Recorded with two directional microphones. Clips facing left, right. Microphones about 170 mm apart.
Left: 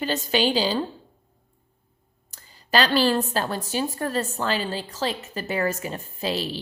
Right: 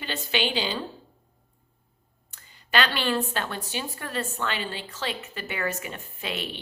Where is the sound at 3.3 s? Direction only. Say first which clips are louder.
Left 5 dB; 35° left (ahead or behind).